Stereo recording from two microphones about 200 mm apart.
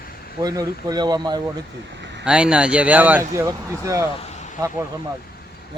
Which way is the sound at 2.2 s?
5° right (ahead or behind).